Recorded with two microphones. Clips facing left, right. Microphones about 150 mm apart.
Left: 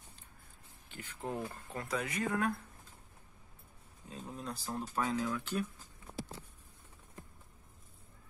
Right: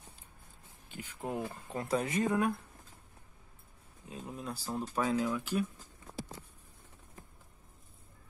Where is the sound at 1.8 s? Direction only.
25° right (ahead or behind).